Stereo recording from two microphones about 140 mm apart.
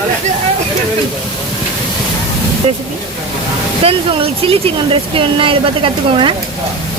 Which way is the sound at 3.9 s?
40° right (ahead or behind).